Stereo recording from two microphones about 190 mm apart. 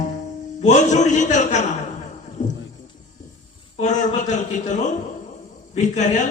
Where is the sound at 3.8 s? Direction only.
40° left (ahead or behind).